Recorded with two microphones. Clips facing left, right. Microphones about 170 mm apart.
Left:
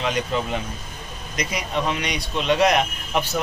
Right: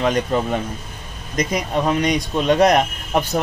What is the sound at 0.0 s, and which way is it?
Speech, 45° right (ahead or behind).